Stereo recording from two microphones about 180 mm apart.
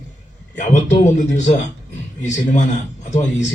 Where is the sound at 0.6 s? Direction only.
40° left (ahead or behind).